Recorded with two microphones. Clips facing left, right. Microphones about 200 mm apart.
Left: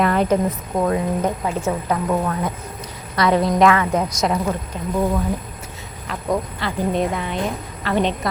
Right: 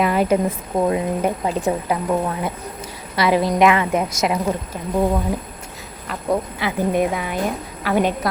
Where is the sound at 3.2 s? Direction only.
5° right (ahead or behind).